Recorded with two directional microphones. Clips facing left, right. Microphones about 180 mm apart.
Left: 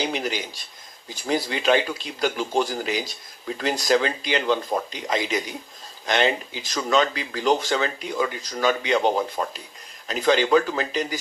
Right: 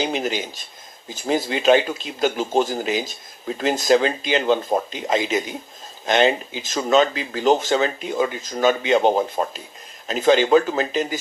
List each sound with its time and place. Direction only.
0.0 s speech: 20° right (ahead or behind)
1.5 s speech: 20° right (ahead or behind)